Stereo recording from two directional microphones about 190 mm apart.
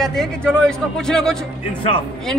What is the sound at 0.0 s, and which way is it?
A man's voice, centre (ahead or behind).